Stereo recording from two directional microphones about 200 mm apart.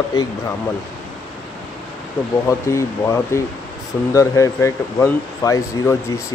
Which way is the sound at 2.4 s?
15° left (ahead or behind).